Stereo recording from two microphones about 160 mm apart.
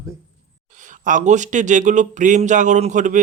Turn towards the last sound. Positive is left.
turn(degrees=-50)  # may be behind; listen again after turning